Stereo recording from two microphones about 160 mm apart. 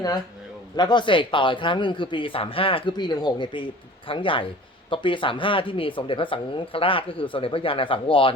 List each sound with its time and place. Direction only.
0.8 s speech: 25° left (ahead or behind)